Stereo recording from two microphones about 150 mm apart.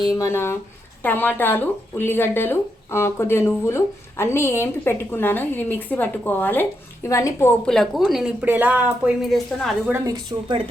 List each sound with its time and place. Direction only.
0.1 s speech: 20° left (ahead or behind)
7.6 s speech: 5° left (ahead or behind)